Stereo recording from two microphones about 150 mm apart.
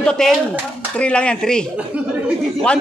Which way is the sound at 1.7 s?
10° right (ahead or behind).